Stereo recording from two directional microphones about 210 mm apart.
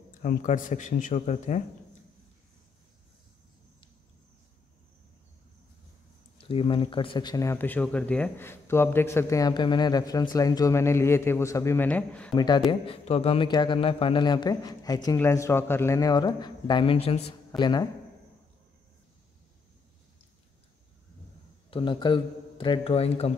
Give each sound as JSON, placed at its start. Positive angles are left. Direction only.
{"t": 0.2, "sound": "speech", "side_deg": 40}
{"t": 6.3, "sound": "speech", "side_deg": 25}
{"t": 12.4, "sound": "a man's voice", "side_deg": 20}
{"t": 21.6, "sound": "a man's voice", "side_deg": 25}